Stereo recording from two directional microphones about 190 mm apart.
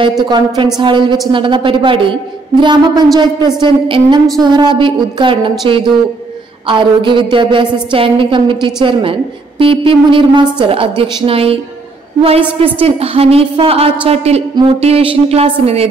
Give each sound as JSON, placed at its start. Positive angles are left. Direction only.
{"t": 0.7, "sound": "a woman's voice", "side_deg": -25}